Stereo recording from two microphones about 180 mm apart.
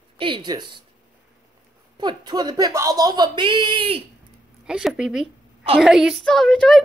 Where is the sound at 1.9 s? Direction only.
25° right (ahead or behind).